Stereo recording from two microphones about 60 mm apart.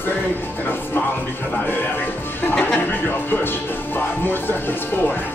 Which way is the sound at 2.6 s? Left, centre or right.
Left.